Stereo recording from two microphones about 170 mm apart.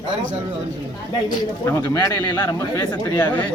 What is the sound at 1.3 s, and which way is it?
Speech, 20° left (ahead or behind).